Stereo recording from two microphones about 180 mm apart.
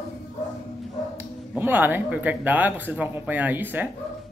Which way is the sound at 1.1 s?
10° right (ahead or behind).